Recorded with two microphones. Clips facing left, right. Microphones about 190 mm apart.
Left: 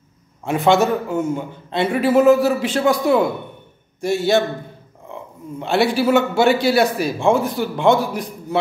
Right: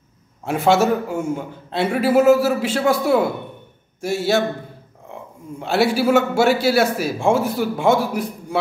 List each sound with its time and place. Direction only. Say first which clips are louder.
0.5 s a man's voice: left 1 dB; 5° right (ahead or behind)
5.6 s a man's voice: even; 5° right (ahead or behind)